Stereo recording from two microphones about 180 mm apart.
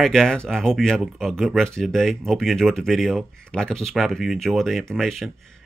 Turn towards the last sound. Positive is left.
turn(degrees=0)  # may be behind; listen again after turning